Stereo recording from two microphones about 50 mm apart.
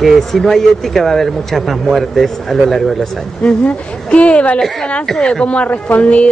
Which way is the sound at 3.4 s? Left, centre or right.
Left.